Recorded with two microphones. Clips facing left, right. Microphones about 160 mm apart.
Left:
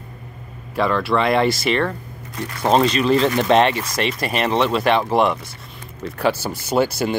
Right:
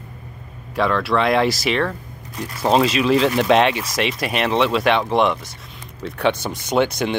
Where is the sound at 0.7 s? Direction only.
Centre (ahead or behind).